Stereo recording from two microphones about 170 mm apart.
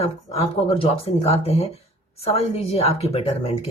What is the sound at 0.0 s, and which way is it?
Speech, 35° left (ahead or behind).